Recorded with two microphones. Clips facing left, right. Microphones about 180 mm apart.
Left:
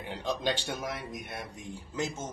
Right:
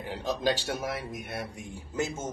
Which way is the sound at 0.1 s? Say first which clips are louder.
Right 3 dB; 5° right (ahead or behind).